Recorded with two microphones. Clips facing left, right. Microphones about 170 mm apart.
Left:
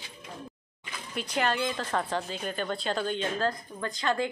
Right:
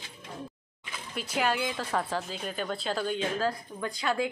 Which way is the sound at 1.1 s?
5° right (ahead or behind).